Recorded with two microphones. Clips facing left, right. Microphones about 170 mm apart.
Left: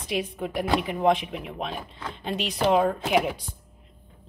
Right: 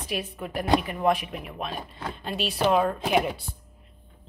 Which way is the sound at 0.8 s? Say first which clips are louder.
Left 2 dB; 20° left (ahead or behind).